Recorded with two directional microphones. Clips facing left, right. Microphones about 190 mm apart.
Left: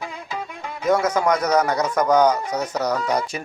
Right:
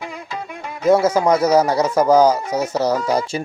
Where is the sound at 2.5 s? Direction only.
5° right (ahead or behind).